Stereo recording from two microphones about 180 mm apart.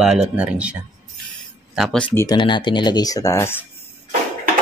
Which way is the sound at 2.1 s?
20° left (ahead or behind).